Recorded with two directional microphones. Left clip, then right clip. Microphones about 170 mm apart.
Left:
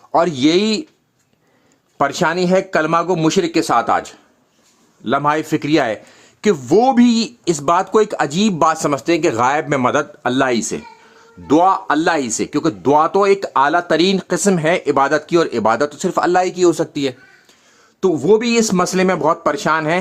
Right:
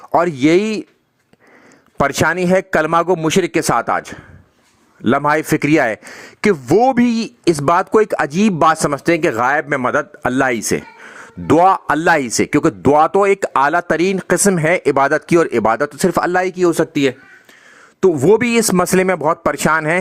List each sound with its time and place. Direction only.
0.1 s speech: 40° right (ahead or behind)
2.0 s speech: 40° right (ahead or behind)
3.2 s speech: 30° right (ahead or behind)
5.0 s speech: 40° right (ahead or behind)
10.2 s speech: 35° right (ahead or behind)
11.5 s speech: 50° right (ahead or behind)
13.3 s speech: 30° right (ahead or behind)
18.0 s speech: 40° right (ahead or behind)